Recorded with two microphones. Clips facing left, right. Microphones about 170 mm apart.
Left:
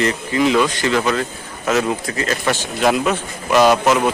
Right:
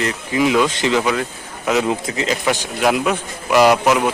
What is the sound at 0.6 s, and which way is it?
Speech, 20° right (ahead or behind).